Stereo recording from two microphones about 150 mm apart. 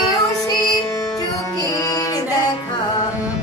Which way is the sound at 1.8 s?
25° left (ahead or behind).